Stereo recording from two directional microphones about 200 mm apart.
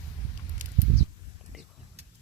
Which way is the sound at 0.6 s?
40° right (ahead or behind).